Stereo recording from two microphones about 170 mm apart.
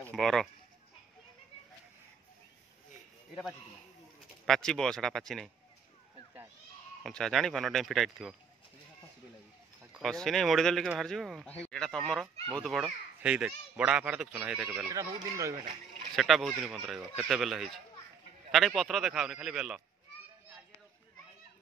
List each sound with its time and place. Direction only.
0.0 s speech: centre (ahead or behind)
4.5 s speech: 5° left (ahead or behind)
7.0 s speech: centre (ahead or behind)
9.9 s speech: centre (ahead or behind)
14.9 s speech: 20° right (ahead or behind)
16.2 s speech: centre (ahead or behind)